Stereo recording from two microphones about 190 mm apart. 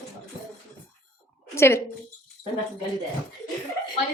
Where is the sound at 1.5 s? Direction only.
15° left (ahead or behind).